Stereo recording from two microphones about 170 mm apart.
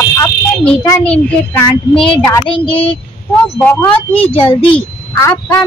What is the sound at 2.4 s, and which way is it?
Speech, 30° left (ahead or behind).